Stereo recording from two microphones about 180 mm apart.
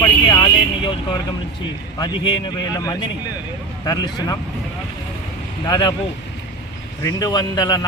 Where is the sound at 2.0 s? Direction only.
25° left (ahead or behind).